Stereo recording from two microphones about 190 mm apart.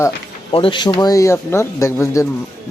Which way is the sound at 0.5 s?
25° left (ahead or behind).